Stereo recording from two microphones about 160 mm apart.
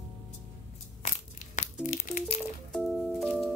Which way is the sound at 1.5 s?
50° left (ahead or behind).